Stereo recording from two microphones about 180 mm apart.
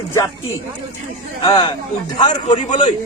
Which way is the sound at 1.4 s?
20° left (ahead or behind).